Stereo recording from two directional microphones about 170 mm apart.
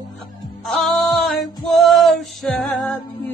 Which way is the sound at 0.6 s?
5° left (ahead or behind).